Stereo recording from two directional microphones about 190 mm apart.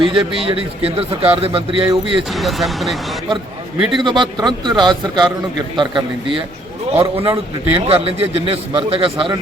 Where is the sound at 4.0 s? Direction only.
25° right (ahead or behind).